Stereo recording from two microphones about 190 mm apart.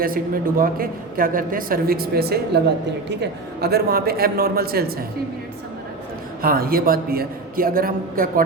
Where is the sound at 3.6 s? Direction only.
55° right (ahead or behind).